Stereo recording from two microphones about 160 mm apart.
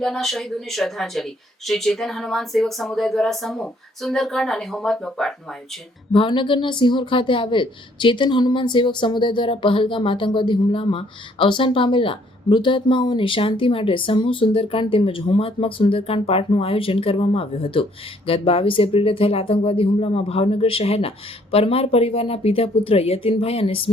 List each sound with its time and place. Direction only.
0.0 s speech: centre (ahead or behind)
6.1 s a woman's voice: 30° left (ahead or behind)